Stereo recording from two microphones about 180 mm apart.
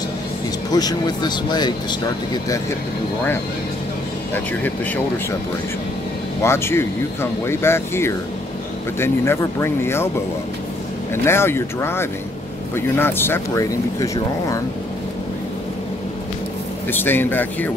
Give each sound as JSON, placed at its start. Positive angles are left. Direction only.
{"t": 0.7, "sound": "speech", "side_deg": 20}
{"t": 6.4, "sound": "speech", "side_deg": 15}
{"t": 11.2, "sound": "speech", "side_deg": 15}
{"t": 16.9, "sound": "speech", "side_deg": 10}